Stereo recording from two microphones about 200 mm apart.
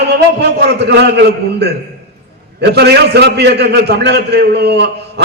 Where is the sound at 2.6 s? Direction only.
55° right (ahead or behind).